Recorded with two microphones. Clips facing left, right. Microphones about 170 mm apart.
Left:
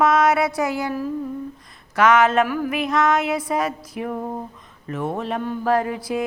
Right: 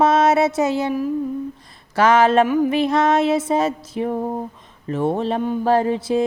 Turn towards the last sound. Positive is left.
turn(degrees=-30)  # may be behind; listen again after turning